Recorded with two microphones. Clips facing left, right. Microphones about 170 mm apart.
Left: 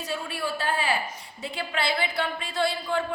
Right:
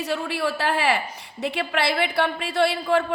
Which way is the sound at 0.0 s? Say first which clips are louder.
Right 6 dB; 70° right (ahead or behind).